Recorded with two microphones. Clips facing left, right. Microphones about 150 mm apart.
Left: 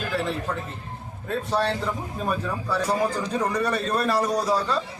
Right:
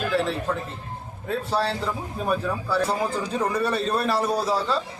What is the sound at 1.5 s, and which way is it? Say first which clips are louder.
A man's voice: left 1 dB; 5° right (ahead or behind).